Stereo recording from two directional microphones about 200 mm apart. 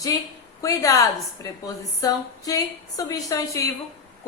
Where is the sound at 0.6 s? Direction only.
15° left (ahead or behind).